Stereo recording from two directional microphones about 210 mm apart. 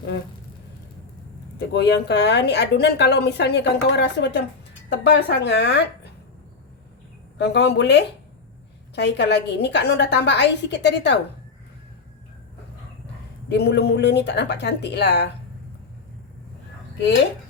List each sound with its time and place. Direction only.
1.5 s speech: 55° left (ahead or behind)
7.3 s a woman's voice: 55° left (ahead or behind)
13.5 s speech: 55° left (ahead or behind)